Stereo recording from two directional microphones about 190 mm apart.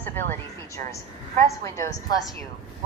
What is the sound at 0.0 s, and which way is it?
A man's voice, 10° left (ahead or behind).